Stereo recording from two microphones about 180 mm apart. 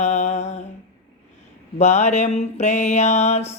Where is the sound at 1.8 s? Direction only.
40° left (ahead or behind).